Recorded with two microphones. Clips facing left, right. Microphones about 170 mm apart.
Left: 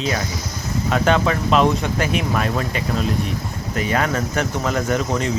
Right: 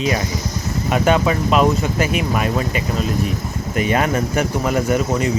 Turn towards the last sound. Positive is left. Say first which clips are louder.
# right 3 dB
turn(degrees=-5)  # may be behind; listen again after turning